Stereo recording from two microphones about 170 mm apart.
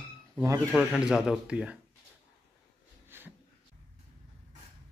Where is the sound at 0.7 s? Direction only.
Centre (ahead or behind).